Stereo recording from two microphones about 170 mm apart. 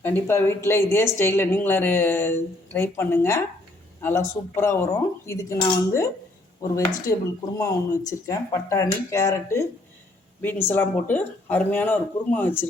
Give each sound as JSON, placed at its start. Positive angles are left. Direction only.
{"t": 0.0, "sound": "a woman's voice", "side_deg": 15}